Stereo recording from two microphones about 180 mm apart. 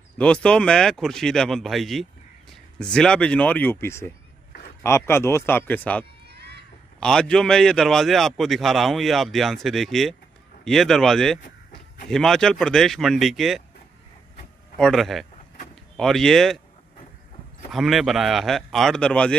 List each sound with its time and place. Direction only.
0.2 s a man's voice: 5° left (ahead or behind)
6.2 s a sound: 65° right (ahead or behind)
7.0 s a man's voice: 5° left (ahead or behind)
14.8 s a man's voice: centre (ahead or behind)
17.6 s a man's voice: centre (ahead or behind)